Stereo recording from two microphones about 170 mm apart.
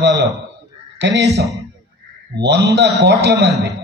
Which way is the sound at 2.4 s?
90° right.